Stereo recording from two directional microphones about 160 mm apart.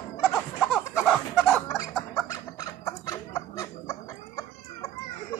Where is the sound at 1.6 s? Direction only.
20° left (ahead or behind).